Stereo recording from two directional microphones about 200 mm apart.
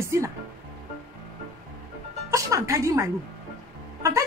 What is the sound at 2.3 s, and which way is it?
A woman's voice, 15° right (ahead or behind).